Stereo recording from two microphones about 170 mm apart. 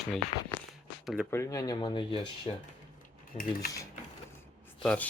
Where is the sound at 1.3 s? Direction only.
15° left (ahead or behind).